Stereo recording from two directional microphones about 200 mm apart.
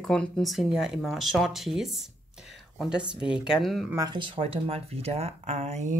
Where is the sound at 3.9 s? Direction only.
20° right (ahead or behind).